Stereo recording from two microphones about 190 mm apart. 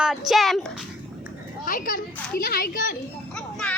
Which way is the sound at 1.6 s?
45° left (ahead or behind).